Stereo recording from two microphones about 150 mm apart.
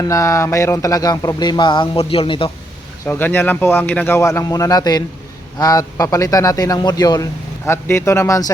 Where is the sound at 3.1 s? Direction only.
15° left (ahead or behind).